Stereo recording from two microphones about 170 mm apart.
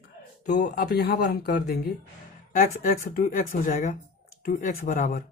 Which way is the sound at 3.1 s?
55° left (ahead or behind).